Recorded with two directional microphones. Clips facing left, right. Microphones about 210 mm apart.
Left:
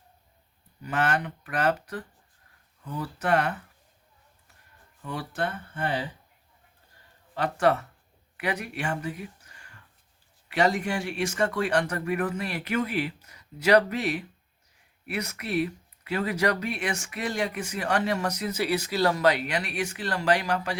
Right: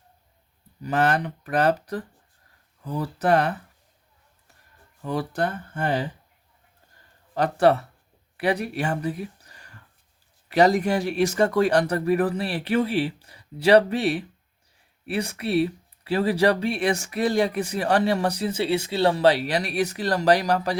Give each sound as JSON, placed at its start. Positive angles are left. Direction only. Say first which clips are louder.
{"t": 0.8, "sound": "speech", "louder": "right 5 dB", "side_deg": -35}
{"t": 5.0, "sound": "speech", "louder": "right 5 dB", "side_deg": -40}
{"t": 7.3, "sound": "speech", "louder": "right 5 dB", "side_deg": -35}